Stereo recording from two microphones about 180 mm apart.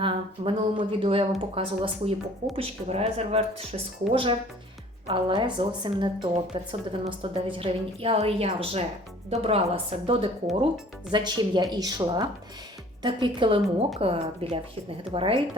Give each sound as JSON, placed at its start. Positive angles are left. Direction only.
{"t": 0.0, "sound": "a woman's voice", "side_deg": -30}